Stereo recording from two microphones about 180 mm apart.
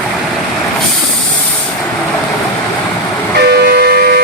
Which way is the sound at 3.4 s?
60° right (ahead or behind).